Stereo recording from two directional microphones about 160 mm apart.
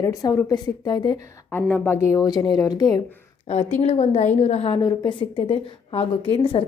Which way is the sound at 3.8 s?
40° left (ahead or behind).